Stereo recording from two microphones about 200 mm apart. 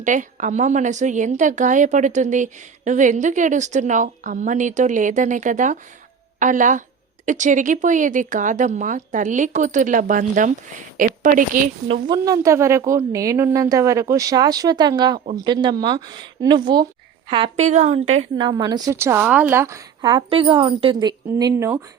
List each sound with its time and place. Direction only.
0.0 s a woman's voice: 40° right (ahead or behind)
11.9 s a woman's voice: 20° right (ahead or behind)
18.3 s a woman's voice: 20° right (ahead or behind)